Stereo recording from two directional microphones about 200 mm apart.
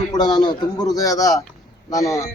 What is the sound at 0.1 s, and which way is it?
A man's voice, 20° left (ahead or behind).